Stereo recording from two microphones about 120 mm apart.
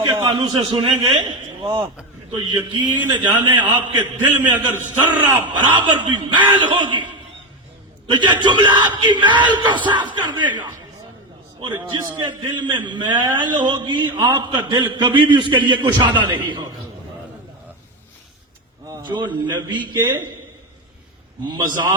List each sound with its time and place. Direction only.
0.0 s a man's voice: 45° right (ahead or behind)
4.5 s a man's voice: 15° right (ahead or behind)
5.3 s a man's voice: 40° right (ahead or behind)
18.9 s a man's voice: 40° right (ahead or behind)
21.4 s a man's voice: 35° right (ahead or behind)